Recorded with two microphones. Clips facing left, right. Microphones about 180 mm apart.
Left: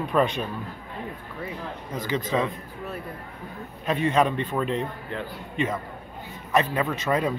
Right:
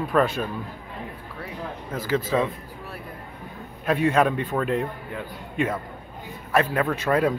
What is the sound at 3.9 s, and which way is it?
Speech, 10° right (ahead or behind).